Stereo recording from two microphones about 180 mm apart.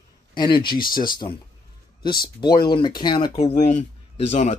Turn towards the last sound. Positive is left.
turn(degrees=35)  # may be behind; listen again after turning